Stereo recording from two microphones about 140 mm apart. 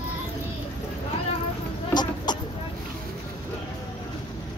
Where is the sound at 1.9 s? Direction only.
30° left (ahead or behind).